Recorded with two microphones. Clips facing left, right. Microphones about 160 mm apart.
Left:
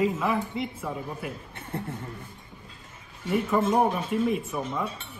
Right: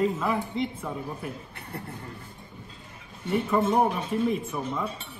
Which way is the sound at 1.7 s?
20° left (ahead or behind).